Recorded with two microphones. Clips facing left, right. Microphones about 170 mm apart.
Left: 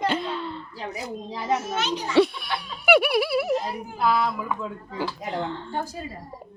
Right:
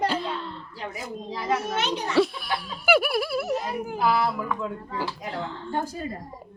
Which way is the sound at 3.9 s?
10° right (ahead or behind).